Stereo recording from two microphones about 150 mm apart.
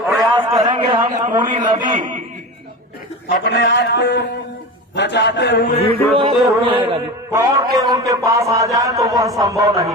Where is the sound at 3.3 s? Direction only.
90° left.